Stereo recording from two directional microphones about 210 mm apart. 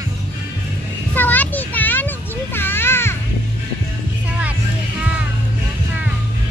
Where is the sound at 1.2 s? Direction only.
10° left (ahead or behind).